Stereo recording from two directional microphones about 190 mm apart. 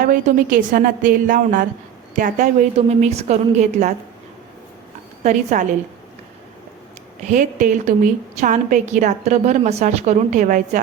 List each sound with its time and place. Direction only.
0.0 s a woman's voice: 45° right (ahead or behind)
5.2 s a woman's voice: 40° right (ahead or behind)
7.3 s a woman's voice: 40° right (ahead or behind)